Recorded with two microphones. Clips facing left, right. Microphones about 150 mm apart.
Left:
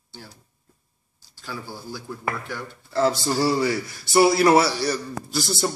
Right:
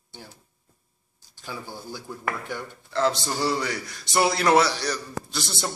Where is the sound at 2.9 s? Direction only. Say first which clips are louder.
Left 3 dB; 5° left (ahead or behind).